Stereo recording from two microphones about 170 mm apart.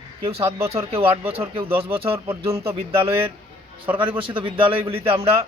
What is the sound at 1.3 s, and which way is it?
Speech, 35° right (ahead or behind).